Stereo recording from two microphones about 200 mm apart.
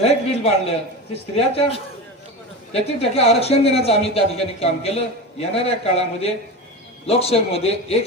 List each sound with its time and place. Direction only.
0.0 s a man's voice: 30° left (ahead or behind)